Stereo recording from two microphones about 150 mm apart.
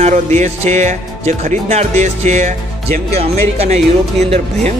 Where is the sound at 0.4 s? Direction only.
50° right (ahead or behind).